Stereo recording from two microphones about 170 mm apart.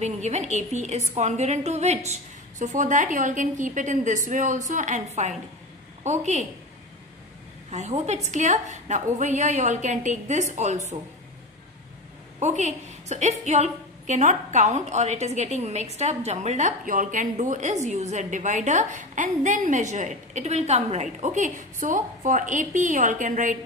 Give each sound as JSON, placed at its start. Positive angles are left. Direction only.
{"t": 0.0, "sound": "a woman's voice", "side_deg": -40}
{"t": 7.7, "sound": "a woman's voice", "side_deg": -40}
{"t": 12.4, "sound": "a woman's voice", "side_deg": -45}